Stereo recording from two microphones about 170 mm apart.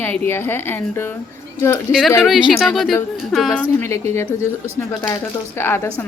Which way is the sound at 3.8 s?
15° left (ahead or behind).